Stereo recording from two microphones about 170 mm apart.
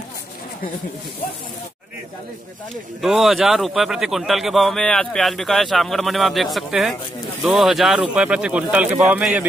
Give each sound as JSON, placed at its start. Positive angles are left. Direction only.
{"t": 3.0, "sound": "a man's voice", "side_deg": 0}